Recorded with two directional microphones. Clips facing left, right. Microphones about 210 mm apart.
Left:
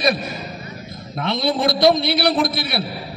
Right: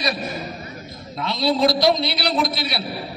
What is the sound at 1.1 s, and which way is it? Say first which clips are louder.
A man's voice: left 1 dB; 55° left (ahead or behind).